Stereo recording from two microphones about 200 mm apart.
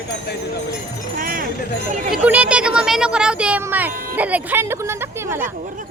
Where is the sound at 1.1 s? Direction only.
45° right (ahead or behind).